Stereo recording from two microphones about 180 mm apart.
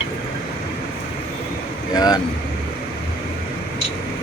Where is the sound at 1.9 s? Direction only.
20° left (ahead or behind).